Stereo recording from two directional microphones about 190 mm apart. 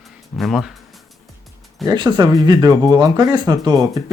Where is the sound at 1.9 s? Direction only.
20° right (ahead or behind).